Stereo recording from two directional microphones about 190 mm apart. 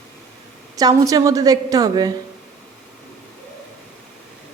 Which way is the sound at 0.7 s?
20° right (ahead or behind).